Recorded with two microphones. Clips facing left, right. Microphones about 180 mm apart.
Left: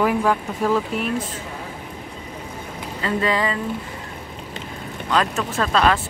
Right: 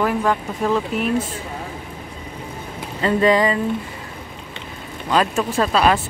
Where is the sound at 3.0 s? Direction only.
20° right (ahead or behind).